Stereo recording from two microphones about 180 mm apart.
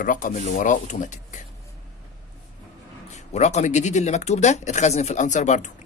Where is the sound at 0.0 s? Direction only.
50° left (ahead or behind).